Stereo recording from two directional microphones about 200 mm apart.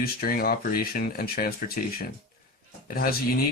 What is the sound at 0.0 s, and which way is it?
Speech, 50° left (ahead or behind).